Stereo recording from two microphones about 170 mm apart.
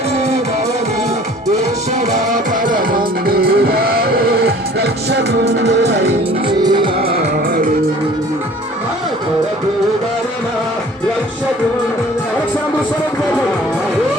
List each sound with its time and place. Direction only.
2.6 s music: 55° right (ahead or behind); by 5.2 s 70° right (ahead or behind)
6.6 s music: 25° right (ahead or behind)